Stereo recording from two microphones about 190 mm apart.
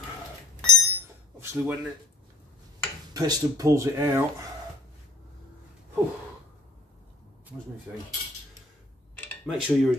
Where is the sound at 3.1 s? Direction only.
20° right (ahead or behind).